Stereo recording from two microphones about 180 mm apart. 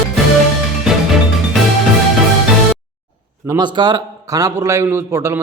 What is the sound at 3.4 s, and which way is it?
A man's voice, 20° right (ahead or behind).